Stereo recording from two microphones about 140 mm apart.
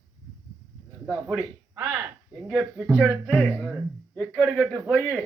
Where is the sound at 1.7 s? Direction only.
15° right (ahead or behind).